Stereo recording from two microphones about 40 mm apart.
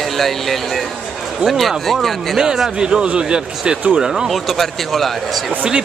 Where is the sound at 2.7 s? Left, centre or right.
Right.